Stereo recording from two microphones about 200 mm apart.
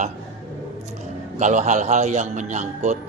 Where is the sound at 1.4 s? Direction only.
35° right (ahead or behind).